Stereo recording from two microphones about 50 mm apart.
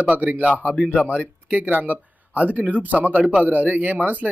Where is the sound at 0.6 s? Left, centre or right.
Right.